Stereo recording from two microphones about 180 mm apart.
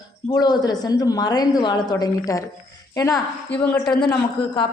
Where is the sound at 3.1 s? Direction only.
10° left (ahead or behind).